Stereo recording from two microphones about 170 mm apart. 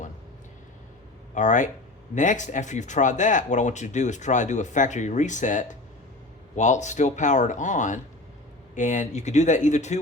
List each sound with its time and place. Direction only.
1.3 s speech: 45° left (ahead or behind)